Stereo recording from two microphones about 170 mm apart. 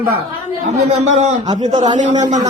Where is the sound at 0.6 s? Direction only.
40° right (ahead or behind).